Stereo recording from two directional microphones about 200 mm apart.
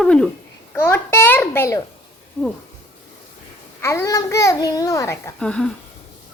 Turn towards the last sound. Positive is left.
turn(degrees=5)  # may be behind; listen again after turning